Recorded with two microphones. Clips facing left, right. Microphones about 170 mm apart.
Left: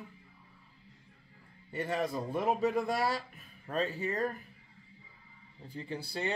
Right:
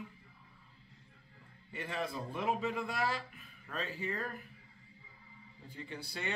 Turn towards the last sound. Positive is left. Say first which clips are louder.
# left 5 dB
turn(degrees=35)  # may be behind; listen again after turning